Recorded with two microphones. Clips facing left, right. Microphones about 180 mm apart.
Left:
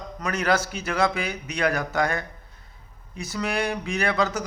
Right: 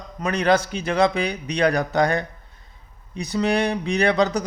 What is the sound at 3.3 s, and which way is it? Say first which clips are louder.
A man's voice: right 6 dB; 25° right (ahead or behind).